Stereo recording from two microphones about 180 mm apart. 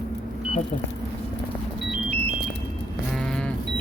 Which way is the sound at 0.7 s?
35° left (ahead or behind).